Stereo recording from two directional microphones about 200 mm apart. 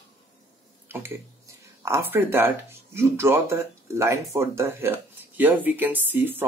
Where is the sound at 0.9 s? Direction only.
10° right (ahead or behind).